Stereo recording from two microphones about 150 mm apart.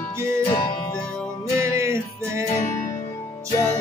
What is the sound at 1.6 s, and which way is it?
Music, 20° right (ahead or behind).